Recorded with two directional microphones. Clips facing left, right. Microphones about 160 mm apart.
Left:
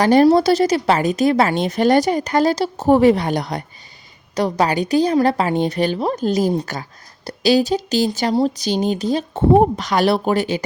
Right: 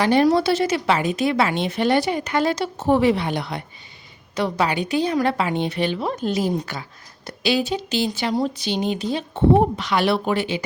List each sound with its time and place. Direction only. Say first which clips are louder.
0.0 s a woman's voice: left 5 dB; 40° left (ahead or behind)